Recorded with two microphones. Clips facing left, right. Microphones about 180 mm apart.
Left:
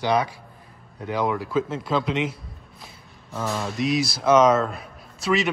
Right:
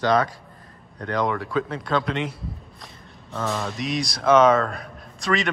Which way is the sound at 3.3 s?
5° left (ahead or behind).